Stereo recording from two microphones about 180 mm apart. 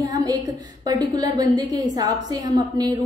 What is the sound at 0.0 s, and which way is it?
A woman's voice, 20° right (ahead or behind).